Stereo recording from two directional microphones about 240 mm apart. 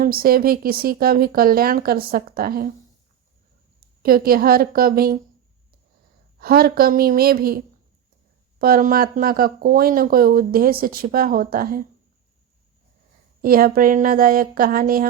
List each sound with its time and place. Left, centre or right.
0.0 s speech: right
3.8 s speech: right
6.4 s speech: right
13.4 s speech: right